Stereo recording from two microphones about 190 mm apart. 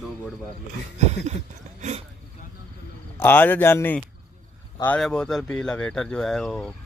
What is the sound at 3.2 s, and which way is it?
Speech, 10° left (ahead or behind).